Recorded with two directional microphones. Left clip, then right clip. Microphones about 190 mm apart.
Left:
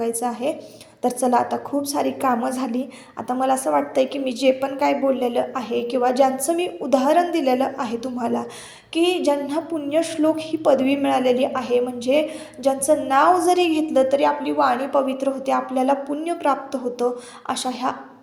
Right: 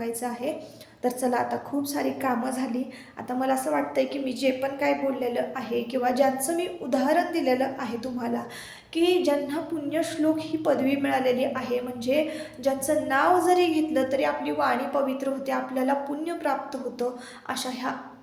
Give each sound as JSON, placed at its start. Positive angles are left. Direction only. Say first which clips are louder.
{"t": 0.0, "sound": "a woman's voice", "louder": "left 7 dB", "side_deg": 30}